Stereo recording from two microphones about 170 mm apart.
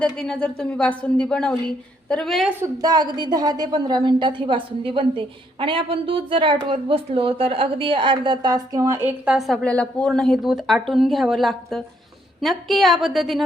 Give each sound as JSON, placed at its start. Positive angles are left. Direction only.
{"t": 0.0, "sound": "a woman's voice", "side_deg": 5}
{"t": 2.6, "sound": "a woman's voice", "side_deg": -20}
{"t": 9.0, "sound": "a woman's voice", "side_deg": -5}